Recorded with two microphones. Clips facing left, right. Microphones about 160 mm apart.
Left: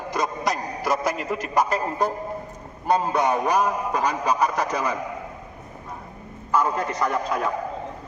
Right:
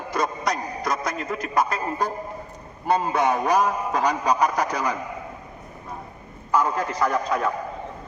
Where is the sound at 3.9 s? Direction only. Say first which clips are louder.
Right 1 dB; 10° left (ahead or behind).